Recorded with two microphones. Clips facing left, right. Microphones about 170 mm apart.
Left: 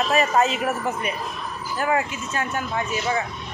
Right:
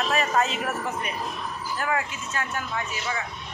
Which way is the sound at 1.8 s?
20° left (ahead or behind).